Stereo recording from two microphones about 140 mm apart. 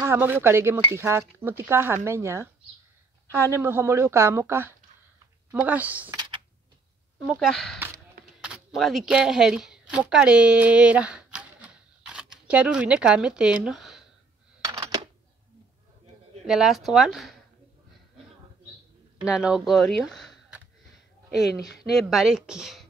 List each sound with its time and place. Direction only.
0.0 s speech: 15° right (ahead or behind)
7.2 s speech: 5° left (ahead or behind)
14.6 s a sound: 30° right (ahead or behind)
16.4 s speech: 5° right (ahead or behind)
19.2 s speech: 5° right (ahead or behind)
22.1 s speech: 5° right (ahead or behind)